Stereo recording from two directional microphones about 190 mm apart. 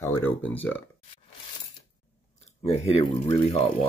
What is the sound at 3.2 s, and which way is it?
Speech, 35° left (ahead or behind).